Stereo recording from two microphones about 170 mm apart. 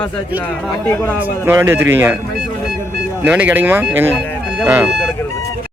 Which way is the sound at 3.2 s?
10° right (ahead or behind).